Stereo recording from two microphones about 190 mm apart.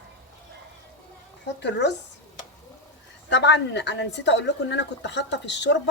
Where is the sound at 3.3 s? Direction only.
65° left (ahead or behind).